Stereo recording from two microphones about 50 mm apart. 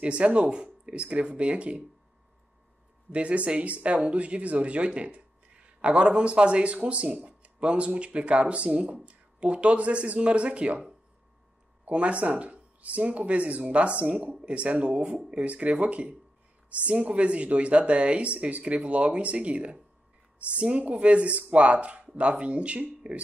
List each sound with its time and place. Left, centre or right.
0.0 s speech: right
3.1 s speech: right
11.8 s speech: right